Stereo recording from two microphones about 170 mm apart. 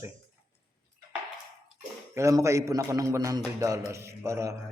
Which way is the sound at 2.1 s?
15° right (ahead or behind).